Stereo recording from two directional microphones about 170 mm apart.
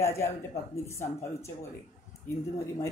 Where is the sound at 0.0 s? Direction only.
15° left (ahead or behind).